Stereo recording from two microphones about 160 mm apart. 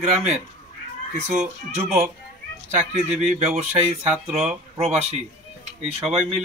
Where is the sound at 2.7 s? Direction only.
45° right (ahead or behind).